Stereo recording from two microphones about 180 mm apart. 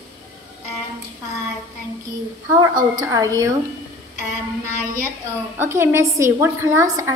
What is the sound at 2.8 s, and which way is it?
Speech, 20° right (ahead or behind).